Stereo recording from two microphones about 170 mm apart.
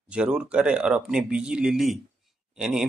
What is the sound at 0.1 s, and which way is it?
Speech, 5° right (ahead or behind).